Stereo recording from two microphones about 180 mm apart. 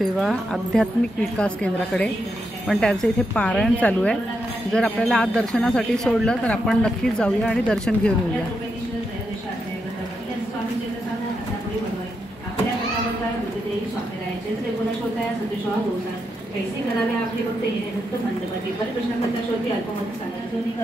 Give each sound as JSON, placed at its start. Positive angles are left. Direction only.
{"t": 0.0, "sound": "speech", "side_deg": 0}